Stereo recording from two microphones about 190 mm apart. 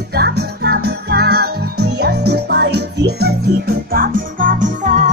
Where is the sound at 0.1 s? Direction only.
55° right (ahead or behind).